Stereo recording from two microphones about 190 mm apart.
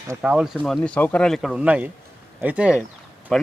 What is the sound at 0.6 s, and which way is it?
A man's voice, 5° left (ahead or behind).